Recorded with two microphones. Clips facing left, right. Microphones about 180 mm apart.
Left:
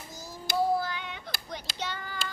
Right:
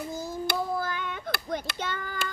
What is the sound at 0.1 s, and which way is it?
Child singing, 55° right (ahead or behind).